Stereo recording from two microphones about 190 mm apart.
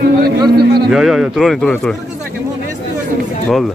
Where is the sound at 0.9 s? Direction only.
Centre (ahead or behind).